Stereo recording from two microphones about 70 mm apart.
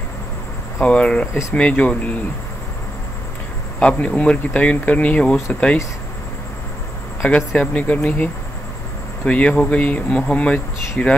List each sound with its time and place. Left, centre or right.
0.8 s speech: centre
3.8 s speech: centre
7.2 s speech: centre